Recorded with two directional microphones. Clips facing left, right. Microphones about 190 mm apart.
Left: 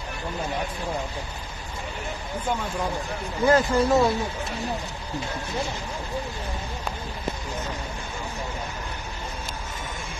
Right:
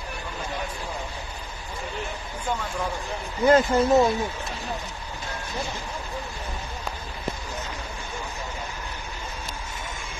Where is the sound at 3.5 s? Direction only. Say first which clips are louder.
Right 2 dB; 20° right (ahead or behind).